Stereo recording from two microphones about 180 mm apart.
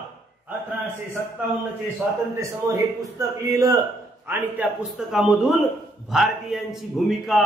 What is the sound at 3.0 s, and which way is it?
A man's voice, 20° right (ahead or behind).